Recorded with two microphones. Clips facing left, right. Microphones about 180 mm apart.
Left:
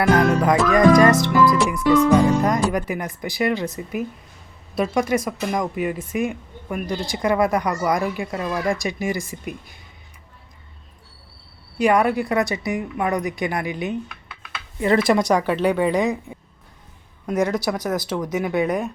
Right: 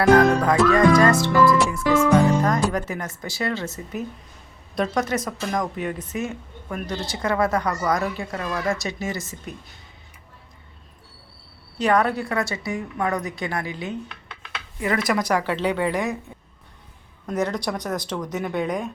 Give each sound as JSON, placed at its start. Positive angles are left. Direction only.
{"t": 0.4, "sound": "speech", "side_deg": 15}
{"t": 11.8, "sound": "speech", "side_deg": 10}
{"t": 14.8, "sound": "speech", "side_deg": 30}